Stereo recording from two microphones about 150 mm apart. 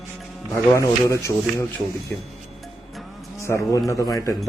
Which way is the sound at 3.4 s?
20° left (ahead or behind).